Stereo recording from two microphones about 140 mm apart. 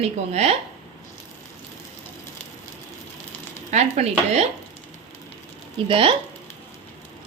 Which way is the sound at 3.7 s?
50° right (ahead or behind).